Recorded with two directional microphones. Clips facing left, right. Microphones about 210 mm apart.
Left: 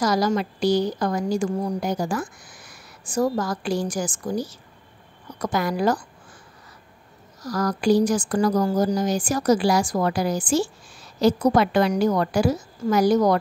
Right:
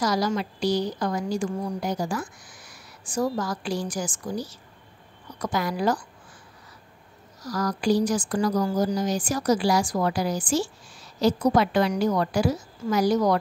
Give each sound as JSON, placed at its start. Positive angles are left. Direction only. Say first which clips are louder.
{"t": 0.0, "sound": "speech", "louder": "left 3 dB", "side_deg": 50}
{"t": 7.4, "sound": "speech", "louder": "left 3 dB", "side_deg": 50}